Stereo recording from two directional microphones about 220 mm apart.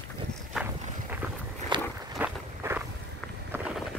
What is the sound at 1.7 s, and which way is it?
Walk, 20° right (ahead or behind).